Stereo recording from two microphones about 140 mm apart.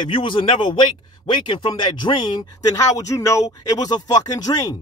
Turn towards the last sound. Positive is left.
turn(degrees=25)  # may be behind; listen again after turning